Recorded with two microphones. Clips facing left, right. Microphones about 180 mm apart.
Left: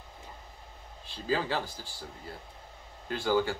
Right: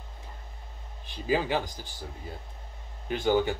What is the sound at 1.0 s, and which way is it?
Speech, 15° right (ahead or behind).